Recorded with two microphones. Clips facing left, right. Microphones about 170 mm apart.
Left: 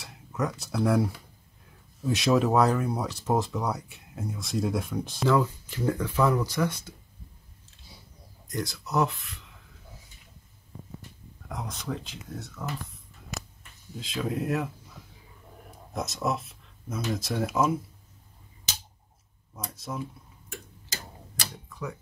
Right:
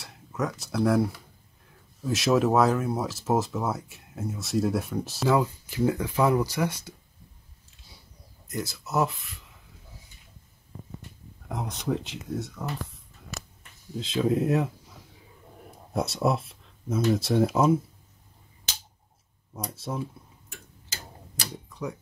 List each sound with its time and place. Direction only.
0.0 s speech: centre (ahead or behind)
8.5 s speech: 5° right (ahead or behind)
11.4 s speech: 25° right (ahead or behind)
13.9 s speech: 25° right (ahead or behind)
15.9 s speech: 30° right (ahead or behind)
19.7 s speech: 30° right (ahead or behind)
21.6 s typewriter: 20° right (ahead or behind)